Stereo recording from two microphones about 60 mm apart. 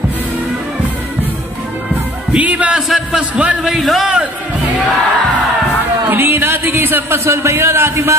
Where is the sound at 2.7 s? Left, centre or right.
Centre.